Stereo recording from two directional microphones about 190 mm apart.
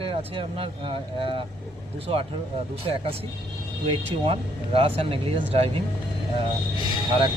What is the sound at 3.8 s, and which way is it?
Speech, 30° right (ahead or behind).